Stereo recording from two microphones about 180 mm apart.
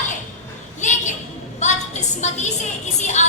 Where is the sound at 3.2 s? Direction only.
40° left (ahead or behind).